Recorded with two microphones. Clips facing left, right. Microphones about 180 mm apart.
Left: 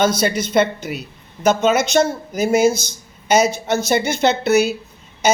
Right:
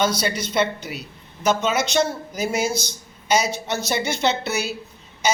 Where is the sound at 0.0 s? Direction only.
50° left (ahead or behind).